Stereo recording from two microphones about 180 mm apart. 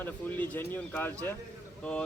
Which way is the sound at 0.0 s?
10° left (ahead or behind).